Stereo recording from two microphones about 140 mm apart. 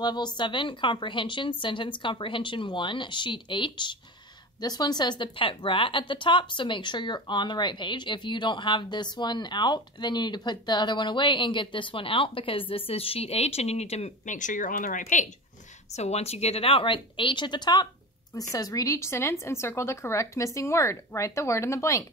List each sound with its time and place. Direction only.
0.0 s a woman's voice: 30° left (ahead or behind); by 15.2 s 65° left (ahead or behind)
15.9 s a woman's voice: 50° left (ahead or behind); by 22.0 s 20° left (ahead or behind)